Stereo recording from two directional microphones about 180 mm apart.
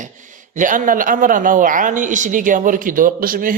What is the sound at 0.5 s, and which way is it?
Speech, 45° right (ahead or behind).